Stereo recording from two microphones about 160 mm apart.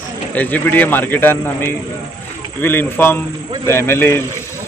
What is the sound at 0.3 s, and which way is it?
A man's voice, 10° left (ahead or behind).